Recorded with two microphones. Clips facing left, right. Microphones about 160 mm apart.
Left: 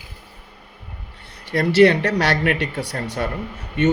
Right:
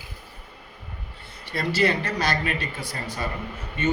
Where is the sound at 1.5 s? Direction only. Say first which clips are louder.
Left 9 dB; 70° left (ahead or behind).